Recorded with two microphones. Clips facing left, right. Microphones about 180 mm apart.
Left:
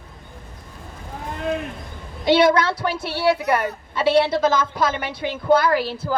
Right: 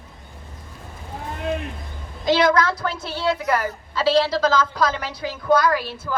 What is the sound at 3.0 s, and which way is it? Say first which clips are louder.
Speech: left 3 dB; 65° left (ahead or behind).